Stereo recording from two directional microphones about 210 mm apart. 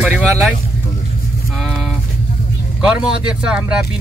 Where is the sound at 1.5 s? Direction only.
Centre (ahead or behind).